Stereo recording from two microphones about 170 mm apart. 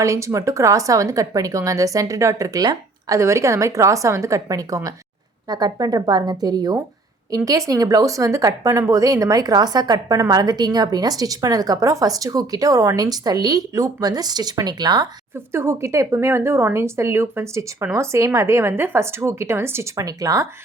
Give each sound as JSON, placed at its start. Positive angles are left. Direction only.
{"t": 0.0, "sound": "a woman's voice", "side_deg": -15}